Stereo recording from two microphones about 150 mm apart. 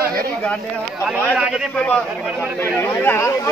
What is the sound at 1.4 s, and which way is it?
Speech, 5° right (ahead or behind).